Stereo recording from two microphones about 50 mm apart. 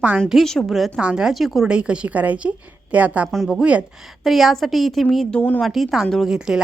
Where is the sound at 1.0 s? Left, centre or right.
Centre.